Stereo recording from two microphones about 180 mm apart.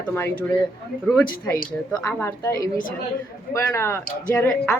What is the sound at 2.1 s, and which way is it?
A woman's voice, 15° left (ahead or behind).